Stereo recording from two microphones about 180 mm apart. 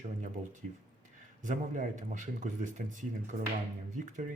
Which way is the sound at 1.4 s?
45° right (ahead or behind).